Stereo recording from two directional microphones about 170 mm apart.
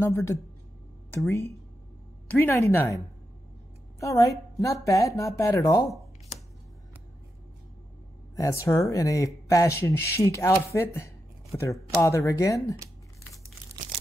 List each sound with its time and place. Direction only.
0.0 s speech: 15° left (ahead or behind)
4.0 s a woman's voice: 20° left (ahead or behind)
8.4 s speech: 15° left (ahead or behind)